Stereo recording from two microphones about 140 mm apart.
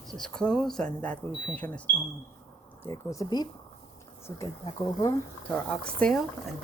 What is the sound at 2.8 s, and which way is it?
Speech, 20° left (ahead or behind).